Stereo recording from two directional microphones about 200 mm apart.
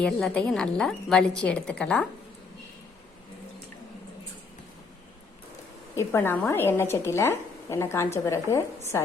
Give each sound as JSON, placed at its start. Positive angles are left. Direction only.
{"t": 0.0, "sound": "a woman's voice", "side_deg": 5}
{"t": 6.0, "sound": "a woman's voice", "side_deg": 10}